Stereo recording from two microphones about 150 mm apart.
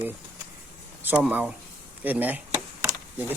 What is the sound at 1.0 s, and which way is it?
Speech, 10° right (ahead or behind).